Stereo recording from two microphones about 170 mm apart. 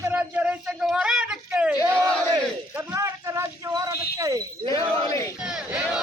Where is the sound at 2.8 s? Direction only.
15° right (ahead or behind).